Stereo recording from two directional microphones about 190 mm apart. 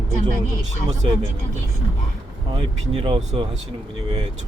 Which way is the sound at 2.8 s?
30° right (ahead or behind).